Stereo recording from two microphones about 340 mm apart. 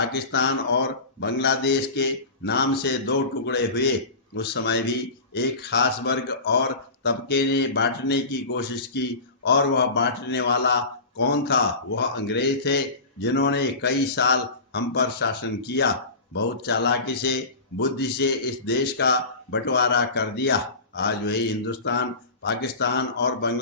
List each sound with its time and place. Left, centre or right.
0.1 s speech: left